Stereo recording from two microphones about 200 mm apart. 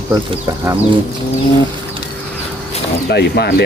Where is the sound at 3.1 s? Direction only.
55° left (ahead or behind).